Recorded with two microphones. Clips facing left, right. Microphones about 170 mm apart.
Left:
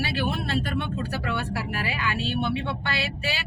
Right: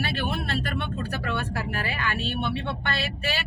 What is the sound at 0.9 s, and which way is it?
Speech, centre (ahead or behind).